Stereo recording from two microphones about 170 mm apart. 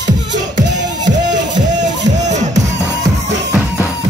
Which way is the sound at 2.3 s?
45° right (ahead or behind).